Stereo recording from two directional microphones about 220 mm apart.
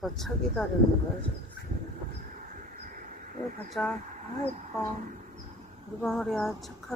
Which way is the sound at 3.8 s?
5° left (ahead or behind).